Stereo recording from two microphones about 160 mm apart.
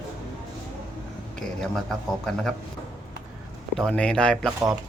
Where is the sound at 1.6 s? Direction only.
Centre (ahead or behind).